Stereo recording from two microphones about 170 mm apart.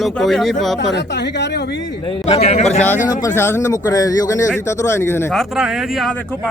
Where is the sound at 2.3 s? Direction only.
40° left (ahead or behind).